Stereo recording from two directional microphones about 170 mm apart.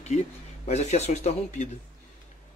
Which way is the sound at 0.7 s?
40° left (ahead or behind).